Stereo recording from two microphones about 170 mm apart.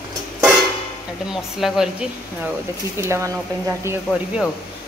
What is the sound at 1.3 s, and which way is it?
Speech, centre (ahead or behind).